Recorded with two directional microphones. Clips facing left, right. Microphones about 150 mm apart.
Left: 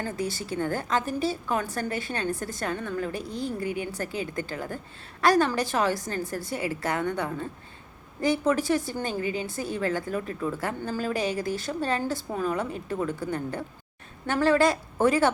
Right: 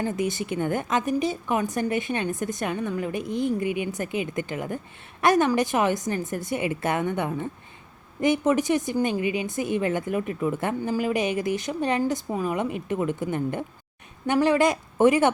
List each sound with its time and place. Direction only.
0.0 s a woman's voice: 20° right (ahead or behind)